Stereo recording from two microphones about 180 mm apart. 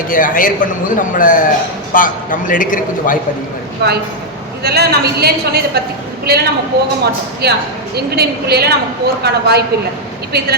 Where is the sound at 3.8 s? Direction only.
65° right (ahead or behind).